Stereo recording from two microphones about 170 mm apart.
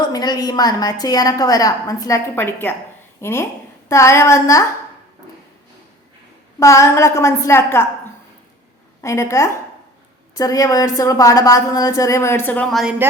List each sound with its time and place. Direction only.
0.0 s a woman's voice: 25° left (ahead or behind)
6.6 s a woman's voice: 15° left (ahead or behind)
9.0 s a woman's voice: 15° left (ahead or behind)
13.0 s speech: 15° right (ahead or behind)